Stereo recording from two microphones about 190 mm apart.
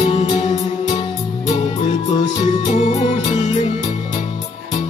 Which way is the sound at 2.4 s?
35° left (ahead or behind).